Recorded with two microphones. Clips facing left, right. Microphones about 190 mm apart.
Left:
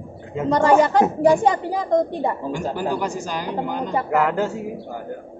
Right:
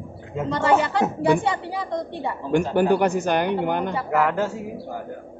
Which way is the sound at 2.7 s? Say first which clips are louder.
Right 6 dB; 60° right (ahead or behind).